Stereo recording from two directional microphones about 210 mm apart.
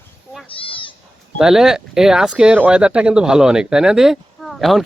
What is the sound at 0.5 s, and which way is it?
Cat, 25° left (ahead or behind).